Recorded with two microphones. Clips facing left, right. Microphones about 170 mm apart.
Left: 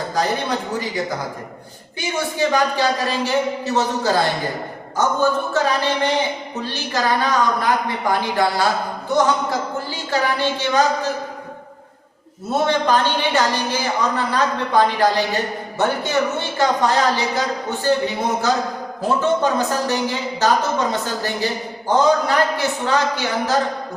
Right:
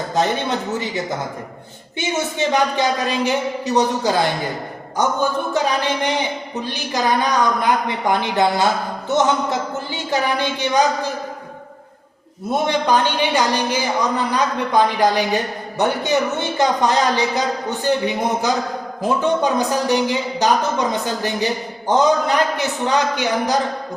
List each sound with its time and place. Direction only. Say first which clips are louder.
0.1 s a woman's voice: right 2 dB; 25° right (ahead or behind)
2.0 s a woman's voice: even; 20° right (ahead or behind)
12.5 s a woman's voice: even; 15° right (ahead or behind)
19.0 s a woman's voice: even; 15° right (ahead or behind)